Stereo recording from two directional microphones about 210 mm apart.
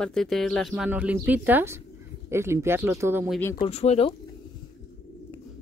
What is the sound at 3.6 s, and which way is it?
Speech, 30° left (ahead or behind).